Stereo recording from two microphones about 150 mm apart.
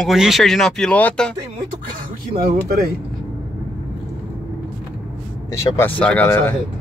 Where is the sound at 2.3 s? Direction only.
75° right (ahead or behind).